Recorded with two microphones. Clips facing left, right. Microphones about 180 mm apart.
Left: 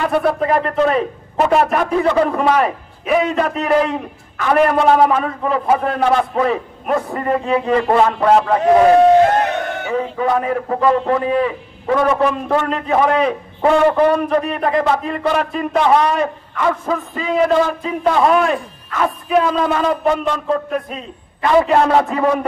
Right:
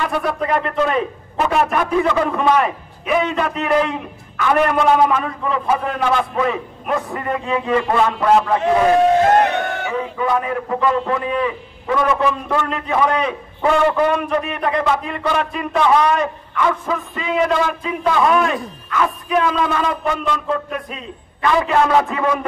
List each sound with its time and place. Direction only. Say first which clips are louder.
0.1 s a man's voice: left 4 dB; 30° left (ahead or behind)
9.8 s a man's voice: left 6 dB; 35° left (ahead or behind)